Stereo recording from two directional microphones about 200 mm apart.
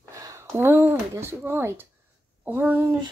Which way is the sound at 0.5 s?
10° right (ahead or behind).